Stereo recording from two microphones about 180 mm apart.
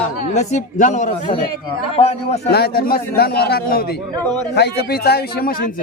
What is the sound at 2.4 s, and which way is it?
A man's voice, 60° left (ahead or behind).